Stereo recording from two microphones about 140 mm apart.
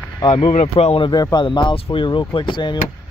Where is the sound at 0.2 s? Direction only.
40° left (ahead or behind).